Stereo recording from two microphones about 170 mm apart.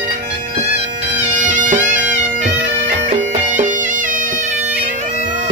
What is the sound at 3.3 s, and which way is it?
Music, 45° right (ahead or behind).